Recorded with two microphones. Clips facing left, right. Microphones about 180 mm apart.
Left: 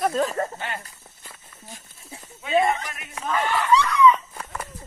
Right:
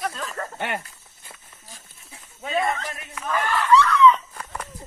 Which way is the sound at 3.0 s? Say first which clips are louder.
Left 1 dB; 30° left (ahead or behind).